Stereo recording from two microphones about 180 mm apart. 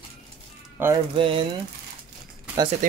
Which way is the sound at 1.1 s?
30° right (ahead or behind).